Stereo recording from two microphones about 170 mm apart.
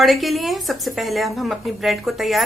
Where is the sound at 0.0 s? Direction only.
Centre (ahead or behind).